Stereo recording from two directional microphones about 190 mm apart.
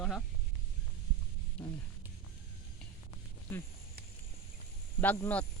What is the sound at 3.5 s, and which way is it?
Speech, 10° left (ahead or behind).